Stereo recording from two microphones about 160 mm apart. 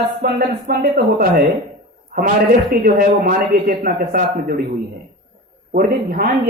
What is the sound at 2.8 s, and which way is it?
A man's voice, 65° right (ahead or behind).